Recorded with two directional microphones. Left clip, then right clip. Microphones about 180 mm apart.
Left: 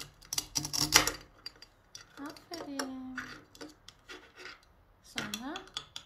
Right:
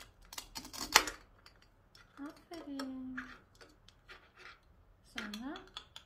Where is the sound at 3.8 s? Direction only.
15° left (ahead or behind).